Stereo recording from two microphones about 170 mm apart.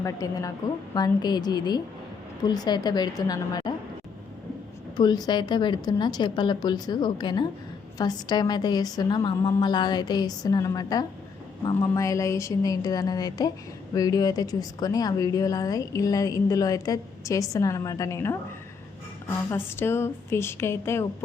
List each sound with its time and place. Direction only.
0.0 s speech: 20° left (ahead or behind)
4.9 s speech: 25° left (ahead or behind)
19.5 s a woman's voice: 15° left (ahead or behind)